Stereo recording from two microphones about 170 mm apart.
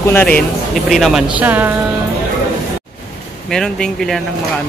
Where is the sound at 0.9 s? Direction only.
Centre (ahead or behind).